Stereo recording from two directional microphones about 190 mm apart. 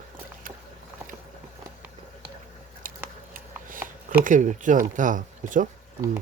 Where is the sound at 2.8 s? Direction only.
45° right (ahead or behind).